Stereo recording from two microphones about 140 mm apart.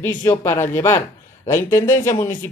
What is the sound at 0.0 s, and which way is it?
Speech, 20° left (ahead or behind).